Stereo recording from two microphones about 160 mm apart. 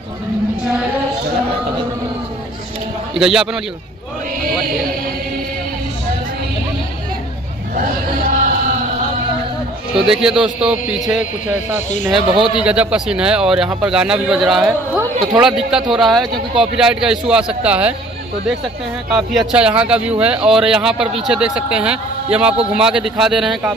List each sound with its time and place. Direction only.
3.2 s a man's voice: 5° right (ahead or behind)
7.7 s chant: 60° right (ahead or behind)
10.0 s a man's voice: 5° right (ahead or behind)
19.1 s a man's voice: 5° right (ahead or behind)